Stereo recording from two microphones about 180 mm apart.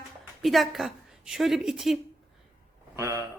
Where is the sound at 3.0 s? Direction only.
15° right (ahead or behind).